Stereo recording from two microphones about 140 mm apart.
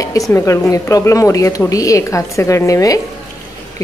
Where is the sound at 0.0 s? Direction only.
25° left (ahead or behind).